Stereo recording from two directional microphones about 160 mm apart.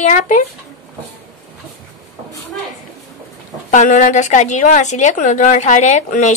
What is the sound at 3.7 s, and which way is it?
A woman's voice, 50° left (ahead or behind).